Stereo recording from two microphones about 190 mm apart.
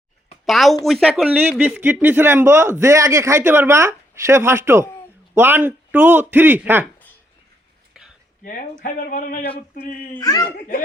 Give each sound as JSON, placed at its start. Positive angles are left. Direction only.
{"t": 0.4, "sound": "a woman's voice", "side_deg": 0}
{"t": 8.8, "sound": "speech", "side_deg": 45}
{"t": 10.2, "sound": "speech", "side_deg": 20}